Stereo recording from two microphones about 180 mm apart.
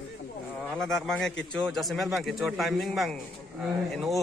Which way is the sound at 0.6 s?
5° left (ahead or behind).